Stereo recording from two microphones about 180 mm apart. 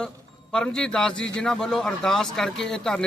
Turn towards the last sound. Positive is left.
turn(degrees=5)  # may be behind; listen again after turning